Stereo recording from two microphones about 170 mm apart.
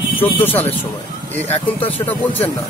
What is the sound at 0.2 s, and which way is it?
Speech, 10° left (ahead or behind).